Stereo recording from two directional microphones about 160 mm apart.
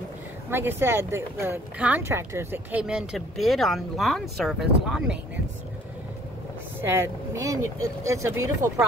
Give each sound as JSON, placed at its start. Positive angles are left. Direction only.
{"t": 0.5, "sound": "speech", "side_deg": -15}
{"t": 6.8, "sound": "speech", "side_deg": -15}